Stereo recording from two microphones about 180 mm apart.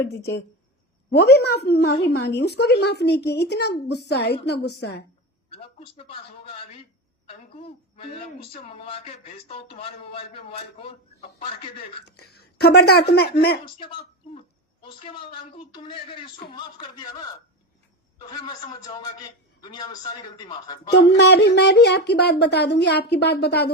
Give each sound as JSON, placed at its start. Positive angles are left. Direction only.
{"t": 1.1, "sound": "a woman's voice", "side_deg": 65}
{"t": 7.9, "sound": "speech", "side_deg": 35}
{"t": 12.0, "sound": "speech", "side_deg": 65}
{"t": 14.8, "sound": "a man's voice", "side_deg": 30}
{"t": 18.3, "sound": "a man's voice", "side_deg": 25}
{"t": 21.2, "sound": "a woman's voice", "side_deg": 70}